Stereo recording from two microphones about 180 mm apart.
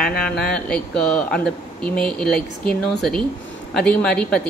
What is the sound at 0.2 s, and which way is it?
Speech, 5° left (ahead or behind).